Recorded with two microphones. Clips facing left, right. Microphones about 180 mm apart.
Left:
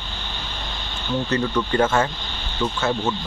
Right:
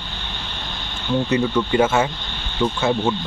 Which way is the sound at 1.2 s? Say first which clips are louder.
Right 2 dB; 10° right (ahead or behind).